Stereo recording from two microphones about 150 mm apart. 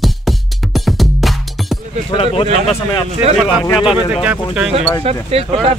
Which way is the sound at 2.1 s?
40° left (ahead or behind).